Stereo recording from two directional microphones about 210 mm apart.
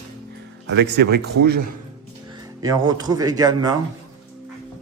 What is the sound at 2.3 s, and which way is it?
Speech, 15° right (ahead or behind).